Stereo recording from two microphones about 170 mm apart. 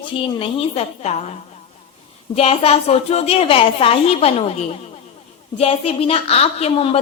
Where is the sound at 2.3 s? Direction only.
35° left (ahead or behind).